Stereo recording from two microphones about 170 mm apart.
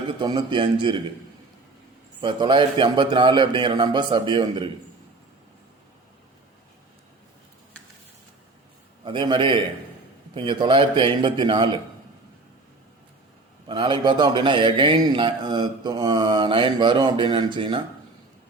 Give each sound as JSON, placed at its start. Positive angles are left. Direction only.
{"t": 0.2, "sound": "a man's voice", "side_deg": -25}
{"t": 2.2, "sound": "a man's voice", "side_deg": -30}
{"t": 9.0, "sound": "a man's voice", "side_deg": -25}
{"t": 13.7, "sound": "a man's voice", "side_deg": -30}